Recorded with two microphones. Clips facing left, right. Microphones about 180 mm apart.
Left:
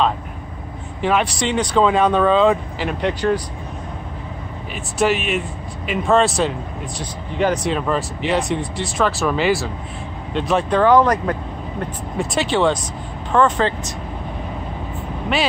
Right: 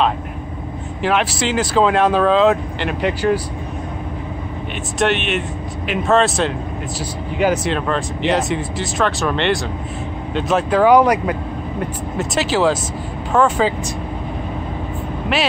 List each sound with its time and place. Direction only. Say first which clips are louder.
1.0 s speech: even; centre (ahead or behind)
4.9 s speech: even; centre (ahead or behind)